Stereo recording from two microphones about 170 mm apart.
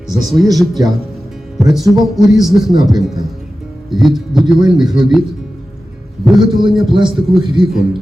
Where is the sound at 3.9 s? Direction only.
Centre (ahead or behind).